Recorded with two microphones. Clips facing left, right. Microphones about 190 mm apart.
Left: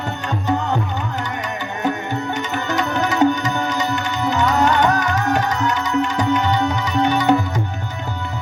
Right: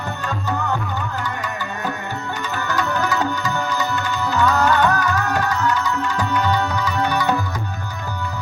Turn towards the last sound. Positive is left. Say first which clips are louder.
# left 4 dB
turn(degrees=20)  # may be behind; listen again after turning